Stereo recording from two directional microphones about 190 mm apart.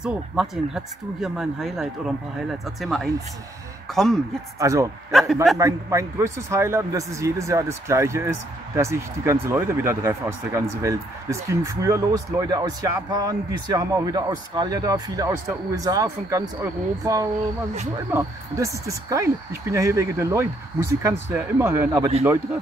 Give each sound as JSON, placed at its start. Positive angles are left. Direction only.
{"t": 0.0, "sound": "speech", "side_deg": -5}
{"t": 4.6, "sound": "a man's voice", "side_deg": -15}
{"t": 5.3, "sound": "speech", "side_deg": 0}
{"t": 5.6, "sound": "a man's voice", "side_deg": -15}